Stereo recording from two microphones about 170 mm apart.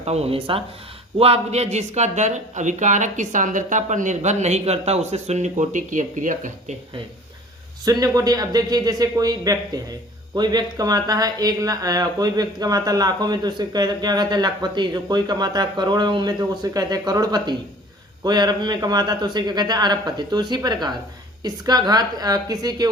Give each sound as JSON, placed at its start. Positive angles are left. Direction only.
{"t": 0.0, "sound": "speech", "side_deg": -40}
{"t": 7.9, "sound": "speech", "side_deg": -20}